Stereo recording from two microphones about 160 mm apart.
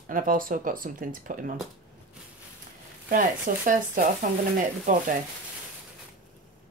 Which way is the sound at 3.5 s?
55° right (ahead or behind).